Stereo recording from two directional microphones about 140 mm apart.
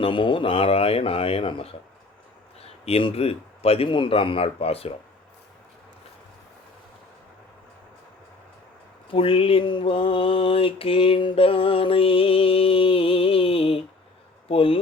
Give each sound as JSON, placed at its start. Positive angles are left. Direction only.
{"t": 0.0, "sound": "a man's voice", "side_deg": 35}
{"t": 9.1, "sound": "mantra", "side_deg": 40}
{"t": 14.4, "sound": "speech", "side_deg": 40}